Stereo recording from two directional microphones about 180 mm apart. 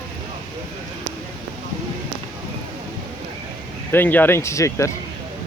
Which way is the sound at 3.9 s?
10° left (ahead or behind).